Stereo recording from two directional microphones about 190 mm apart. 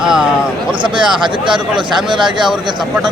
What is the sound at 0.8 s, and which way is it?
Speech, 25° right (ahead or behind).